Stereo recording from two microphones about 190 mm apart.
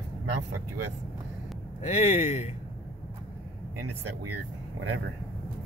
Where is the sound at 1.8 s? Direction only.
35° left (ahead or behind).